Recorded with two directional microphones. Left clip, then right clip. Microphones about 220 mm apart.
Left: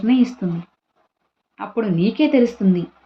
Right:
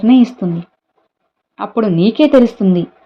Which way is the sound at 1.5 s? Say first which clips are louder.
Right 7 dB; 35° right (ahead or behind).